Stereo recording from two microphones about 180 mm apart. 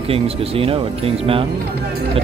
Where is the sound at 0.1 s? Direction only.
30° right (ahead or behind).